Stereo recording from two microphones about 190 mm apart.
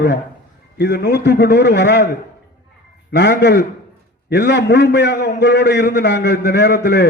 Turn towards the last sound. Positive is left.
turn(degrees=60)  # may be behind; listen again after turning